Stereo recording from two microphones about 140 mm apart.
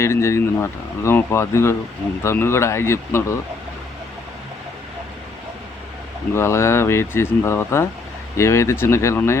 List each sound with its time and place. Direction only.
0.0 s speech: 20° left (ahead or behind)
6.3 s speech: 20° left (ahead or behind)